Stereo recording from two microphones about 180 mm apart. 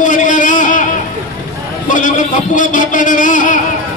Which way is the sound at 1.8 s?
45° left (ahead or behind).